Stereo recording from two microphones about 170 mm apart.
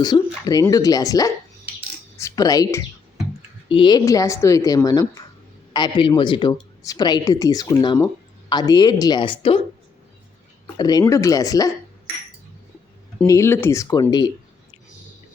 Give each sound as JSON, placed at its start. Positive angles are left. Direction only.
{"t": 0.0, "sound": "a woman's voice", "side_deg": 25}
{"t": 10.8, "sound": "a woman's voice", "side_deg": 25}
{"t": 13.2, "sound": "a woman's voice", "side_deg": 15}